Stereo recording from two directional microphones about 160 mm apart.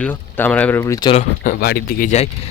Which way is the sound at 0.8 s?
20° left (ahead or behind).